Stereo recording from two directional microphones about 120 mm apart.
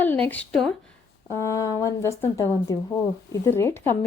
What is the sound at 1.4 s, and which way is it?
A woman's voice, 25° left (ahead or behind).